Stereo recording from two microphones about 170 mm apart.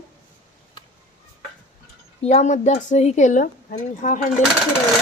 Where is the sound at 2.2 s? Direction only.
45° left (ahead or behind).